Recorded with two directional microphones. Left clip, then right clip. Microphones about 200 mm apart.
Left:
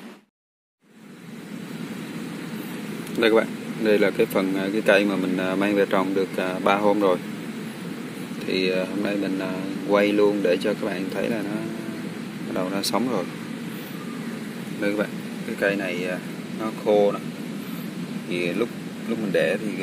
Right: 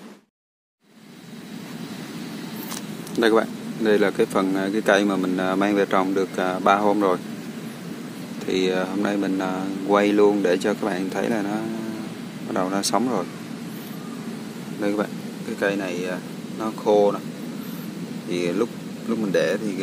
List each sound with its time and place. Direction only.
3.2 s speech: 10° right (ahead or behind)
8.5 s speech: 10° right (ahead or behind)
12.5 s speech: 10° right (ahead or behind)
14.8 s speech: 5° right (ahead or behind)
18.3 s speech: 20° right (ahead or behind)